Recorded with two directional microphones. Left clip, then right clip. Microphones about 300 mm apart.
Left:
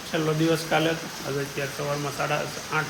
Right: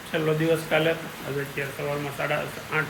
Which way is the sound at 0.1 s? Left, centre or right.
Centre.